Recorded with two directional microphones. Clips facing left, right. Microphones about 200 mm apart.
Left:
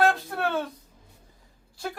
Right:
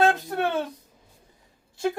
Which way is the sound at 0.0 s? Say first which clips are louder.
Right 2 dB; 20° right (ahead or behind).